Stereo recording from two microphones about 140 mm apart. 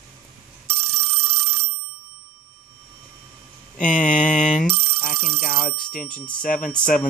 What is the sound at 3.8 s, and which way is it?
Mantra, 70° left (ahead or behind).